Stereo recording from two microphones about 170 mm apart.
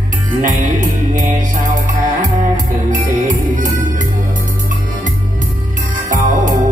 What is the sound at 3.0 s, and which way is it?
Music, 50° right (ahead or behind).